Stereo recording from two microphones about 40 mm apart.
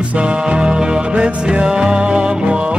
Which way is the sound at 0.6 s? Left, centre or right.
Right.